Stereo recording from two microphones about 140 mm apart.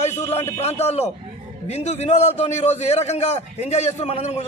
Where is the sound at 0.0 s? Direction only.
50° left (ahead or behind).